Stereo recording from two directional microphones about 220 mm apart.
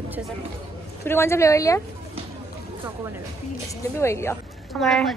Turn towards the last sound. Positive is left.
turn(degrees=0)  # may be behind; listen again after turning